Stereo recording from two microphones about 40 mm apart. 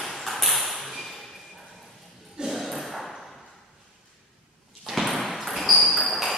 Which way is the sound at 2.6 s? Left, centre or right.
Centre.